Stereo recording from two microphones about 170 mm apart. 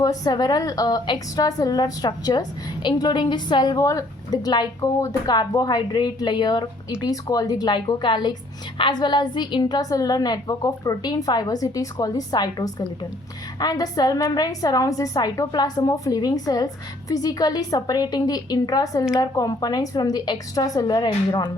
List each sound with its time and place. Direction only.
0.0 s a woman's voice: 20° left (ahead or behind)